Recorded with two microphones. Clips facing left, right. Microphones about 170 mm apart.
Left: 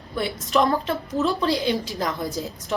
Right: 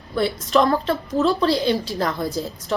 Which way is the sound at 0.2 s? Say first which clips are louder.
Right 3 dB; 15° left (ahead or behind).